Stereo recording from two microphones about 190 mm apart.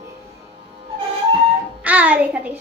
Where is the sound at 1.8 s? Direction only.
10° right (ahead or behind).